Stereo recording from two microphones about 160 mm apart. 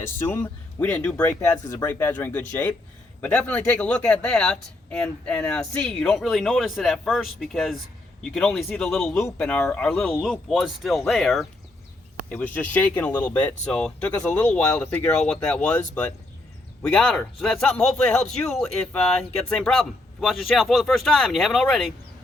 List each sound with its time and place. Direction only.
0.0 s speech: 15° left (ahead or behind)